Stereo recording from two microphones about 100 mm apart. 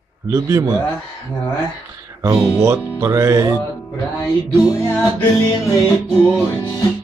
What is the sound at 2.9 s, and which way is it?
Speech, 35° right (ahead or behind).